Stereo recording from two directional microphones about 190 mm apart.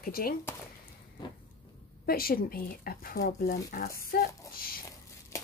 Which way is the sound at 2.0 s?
50° left (ahead or behind).